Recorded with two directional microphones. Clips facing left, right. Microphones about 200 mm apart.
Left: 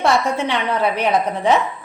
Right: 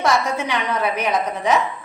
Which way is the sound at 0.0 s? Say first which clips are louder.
Left 2 dB; 30° left (ahead or behind).